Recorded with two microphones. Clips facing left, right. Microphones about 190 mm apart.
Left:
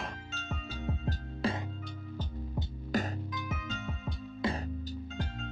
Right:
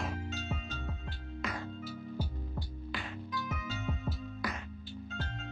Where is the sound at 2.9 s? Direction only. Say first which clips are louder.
Left 12 dB; 40° left (ahead or behind).